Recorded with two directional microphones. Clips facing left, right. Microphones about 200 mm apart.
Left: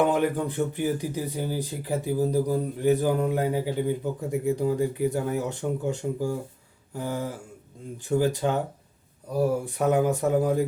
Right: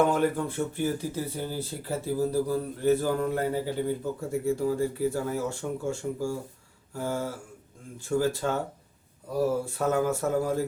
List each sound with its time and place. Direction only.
0.0 s speech: 15° left (ahead or behind)
9.6 s speech: 15° left (ahead or behind)